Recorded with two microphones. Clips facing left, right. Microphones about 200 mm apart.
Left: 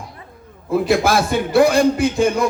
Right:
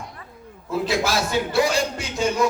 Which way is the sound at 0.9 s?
55° left (ahead or behind).